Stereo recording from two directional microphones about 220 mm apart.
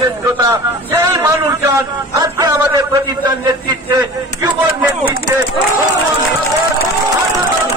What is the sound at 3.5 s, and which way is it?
A man's voice, 20° right (ahead or behind).